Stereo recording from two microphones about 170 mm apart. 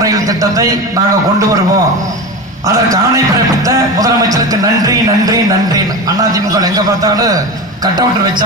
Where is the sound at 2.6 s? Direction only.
20° right (ahead or behind).